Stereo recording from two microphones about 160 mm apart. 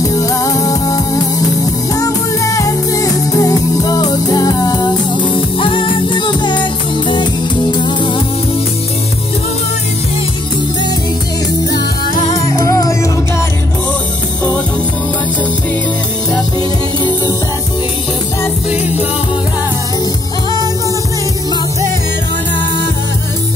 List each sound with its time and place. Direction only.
0.0 s music: 20° left (ahead or behind)
12.3 s music: 20° left (ahead or behind)